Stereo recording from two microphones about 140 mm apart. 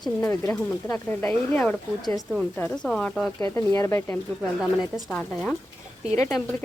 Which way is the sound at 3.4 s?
20° left (ahead or behind).